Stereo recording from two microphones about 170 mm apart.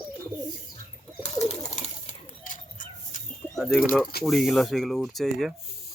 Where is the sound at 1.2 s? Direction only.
40° left (ahead or behind).